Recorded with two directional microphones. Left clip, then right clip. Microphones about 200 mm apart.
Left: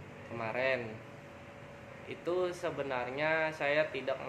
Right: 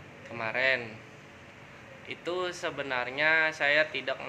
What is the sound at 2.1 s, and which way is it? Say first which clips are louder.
Speech: right 1 dB; centre (ahead or behind).